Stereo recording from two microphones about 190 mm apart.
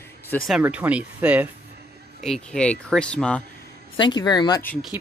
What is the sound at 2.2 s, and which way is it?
Speech, 5° left (ahead or behind).